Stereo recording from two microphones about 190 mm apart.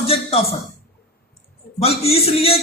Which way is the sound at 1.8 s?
30° left (ahead or behind).